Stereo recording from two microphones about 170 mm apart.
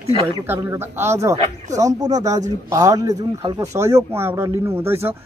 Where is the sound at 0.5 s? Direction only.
15° right (ahead or behind).